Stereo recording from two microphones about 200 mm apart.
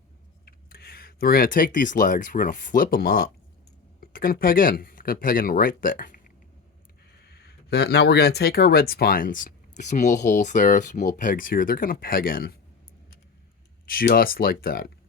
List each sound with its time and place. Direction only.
0.4 s speech: 50° left (ahead or behind)
13.9 s speech: 45° left (ahead or behind)